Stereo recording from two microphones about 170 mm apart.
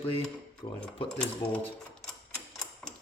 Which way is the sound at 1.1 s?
10° left (ahead or behind).